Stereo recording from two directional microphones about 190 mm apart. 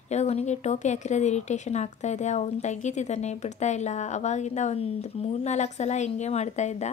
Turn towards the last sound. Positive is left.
turn(degrees=35)  # may be behind; listen again after turning